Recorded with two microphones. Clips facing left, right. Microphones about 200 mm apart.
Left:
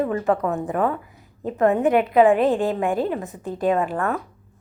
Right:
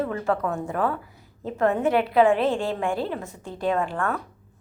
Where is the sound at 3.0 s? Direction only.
15° left (ahead or behind).